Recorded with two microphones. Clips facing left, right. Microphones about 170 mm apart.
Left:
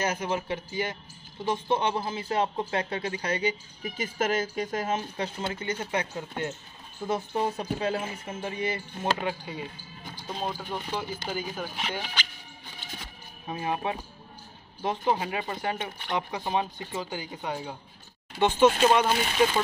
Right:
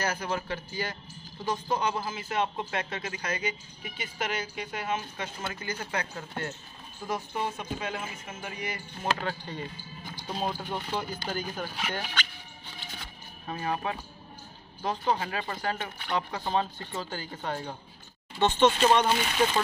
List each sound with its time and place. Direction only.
0.0 s speech: 20° left (ahead or behind)
7.1 s speech: 30° left (ahead or behind)
9.2 s speech: 10° left (ahead or behind)
10.2 s speech: 5° right (ahead or behind)
13.5 s speech: 20° left (ahead or behind)